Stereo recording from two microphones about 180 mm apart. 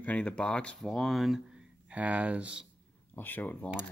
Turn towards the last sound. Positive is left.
turn(degrees=10)  # may be behind; listen again after turning